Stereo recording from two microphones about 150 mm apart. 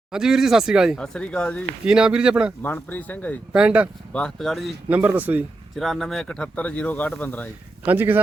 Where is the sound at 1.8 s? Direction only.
5° right (ahead or behind).